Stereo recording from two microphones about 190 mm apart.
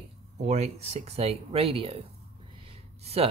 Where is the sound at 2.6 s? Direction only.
30° right (ahead or behind).